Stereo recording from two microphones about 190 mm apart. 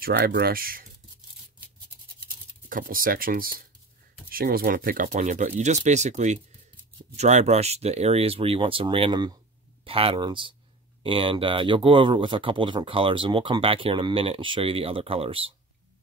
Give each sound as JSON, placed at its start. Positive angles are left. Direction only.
{"t": 0.0, "sound": "speech", "side_deg": -55}
{"t": 2.7, "sound": "speech", "side_deg": -50}